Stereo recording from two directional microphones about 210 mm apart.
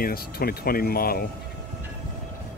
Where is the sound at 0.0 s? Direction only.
45° left (ahead or behind).